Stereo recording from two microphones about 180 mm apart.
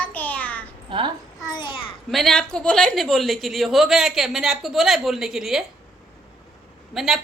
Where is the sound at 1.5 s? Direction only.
25° left (ahead or behind).